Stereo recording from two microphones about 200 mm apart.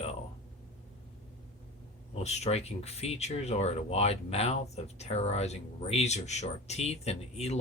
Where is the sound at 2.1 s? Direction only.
35° left (ahead or behind).